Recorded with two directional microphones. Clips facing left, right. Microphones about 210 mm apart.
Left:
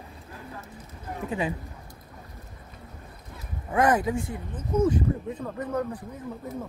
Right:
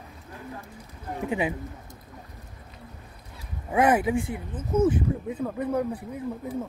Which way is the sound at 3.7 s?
10° right (ahead or behind).